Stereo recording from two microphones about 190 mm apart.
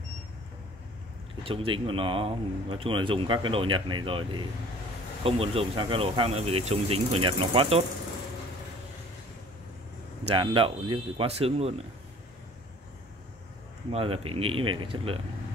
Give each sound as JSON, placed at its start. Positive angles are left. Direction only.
{"t": 1.4, "sound": "speech", "side_deg": -30}
{"t": 10.3, "sound": "speech", "side_deg": -25}
{"t": 13.9, "sound": "speech", "side_deg": -30}